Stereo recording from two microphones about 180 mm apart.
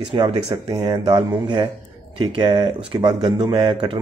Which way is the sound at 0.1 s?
30° right (ahead or behind).